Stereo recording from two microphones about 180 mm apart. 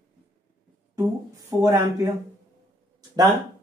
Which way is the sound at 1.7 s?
15° right (ahead or behind).